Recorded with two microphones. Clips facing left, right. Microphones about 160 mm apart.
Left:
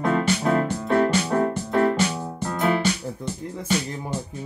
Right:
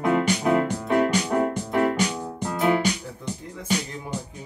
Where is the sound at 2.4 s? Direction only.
15° right (ahead or behind).